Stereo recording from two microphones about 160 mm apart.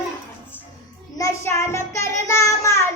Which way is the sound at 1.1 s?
20° left (ahead or behind).